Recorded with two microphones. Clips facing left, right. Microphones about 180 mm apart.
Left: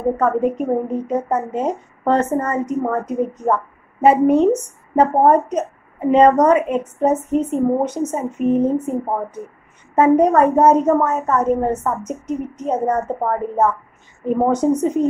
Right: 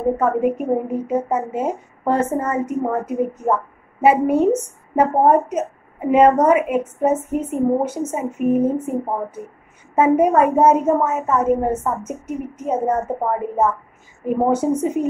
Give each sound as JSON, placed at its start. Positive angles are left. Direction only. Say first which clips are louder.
{"t": 0.2, "sound": "a woman's voice", "louder": "left 1 dB", "side_deg": -10}
{"t": 14.2, "sound": "a woman's voice", "louder": "left 1 dB", "side_deg": -5}